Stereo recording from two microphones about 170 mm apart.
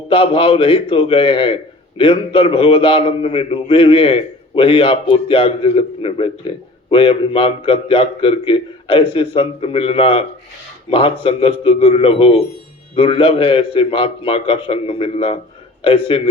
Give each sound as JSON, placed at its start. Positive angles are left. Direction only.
{"t": 0.1, "sound": "a man's voice", "side_deg": 30}